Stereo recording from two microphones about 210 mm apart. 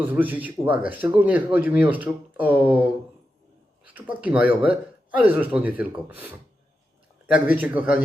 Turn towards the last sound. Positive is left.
turn(degrees=-5)  # may be behind; listen again after turning